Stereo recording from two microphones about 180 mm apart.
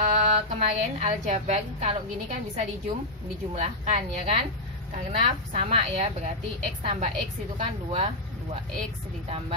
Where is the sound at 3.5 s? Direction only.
35° right (ahead or behind).